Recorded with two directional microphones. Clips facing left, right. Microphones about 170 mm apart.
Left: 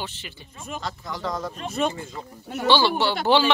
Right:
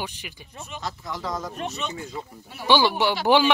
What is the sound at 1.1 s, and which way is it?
Speech, centre (ahead or behind).